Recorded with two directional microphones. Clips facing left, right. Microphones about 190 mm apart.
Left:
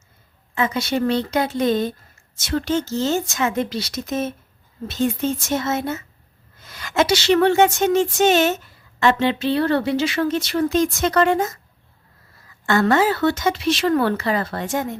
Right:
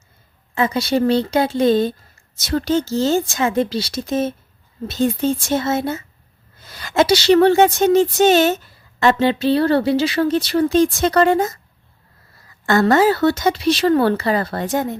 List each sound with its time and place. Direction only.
0.5 s speech: 35° right (ahead or behind)
12.6 s speech: 40° right (ahead or behind)